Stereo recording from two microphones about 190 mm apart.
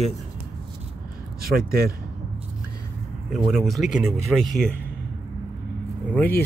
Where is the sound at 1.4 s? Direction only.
55° right (ahead or behind).